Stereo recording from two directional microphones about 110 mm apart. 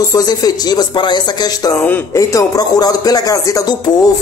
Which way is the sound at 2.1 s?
30° left (ahead or behind).